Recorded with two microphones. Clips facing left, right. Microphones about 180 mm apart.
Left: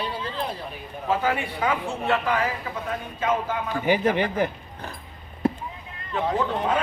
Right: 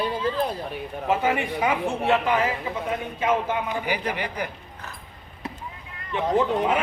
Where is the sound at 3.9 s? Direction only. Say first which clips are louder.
Left 6 dB; 25° left (ahead or behind).